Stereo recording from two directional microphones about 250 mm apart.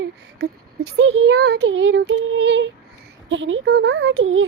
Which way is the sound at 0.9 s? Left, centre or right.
Right.